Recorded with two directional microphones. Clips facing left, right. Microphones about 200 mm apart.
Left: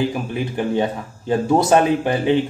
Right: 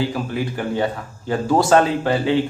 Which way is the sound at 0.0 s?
20° left (ahead or behind).